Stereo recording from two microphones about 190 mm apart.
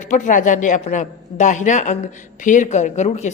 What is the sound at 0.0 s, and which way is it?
A woman's voice, 40° left (ahead or behind).